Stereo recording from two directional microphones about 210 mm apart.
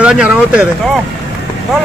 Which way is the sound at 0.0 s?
5° right (ahead or behind).